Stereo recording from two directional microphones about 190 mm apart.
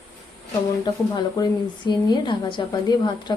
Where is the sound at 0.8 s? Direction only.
20° left (ahead or behind).